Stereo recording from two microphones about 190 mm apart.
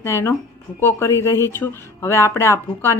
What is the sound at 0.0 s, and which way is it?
Speech, 15° left (ahead or behind).